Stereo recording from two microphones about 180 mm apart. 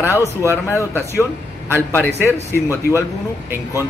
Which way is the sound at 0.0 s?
15° left (ahead or behind).